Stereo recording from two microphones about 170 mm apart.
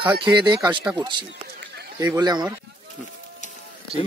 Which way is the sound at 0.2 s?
25° right (ahead or behind).